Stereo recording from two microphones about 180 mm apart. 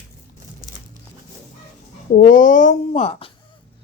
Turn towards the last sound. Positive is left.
turn(degrees=35)  # may be behind; listen again after turning